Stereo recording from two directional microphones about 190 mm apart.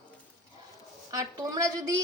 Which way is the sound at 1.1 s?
20° right (ahead or behind).